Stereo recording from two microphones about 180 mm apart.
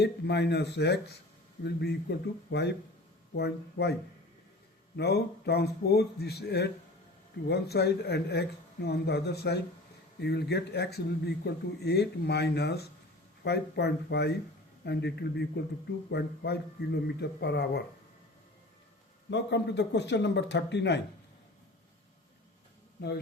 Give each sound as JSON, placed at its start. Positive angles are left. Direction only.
{"t": 0.0, "sound": "speech", "side_deg": 70}
{"t": 4.9, "sound": "speech", "side_deg": 65}
{"t": 19.3, "sound": "speech", "side_deg": 75}
{"t": 23.0, "sound": "speech", "side_deg": 65}